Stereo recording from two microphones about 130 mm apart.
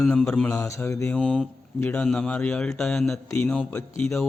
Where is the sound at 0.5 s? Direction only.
25° left (ahead or behind).